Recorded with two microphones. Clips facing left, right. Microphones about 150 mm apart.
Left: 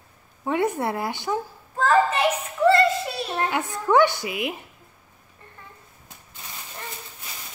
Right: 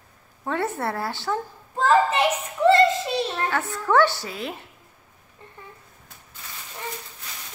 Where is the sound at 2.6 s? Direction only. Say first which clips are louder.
Right 1 dB; 25° right (ahead or behind).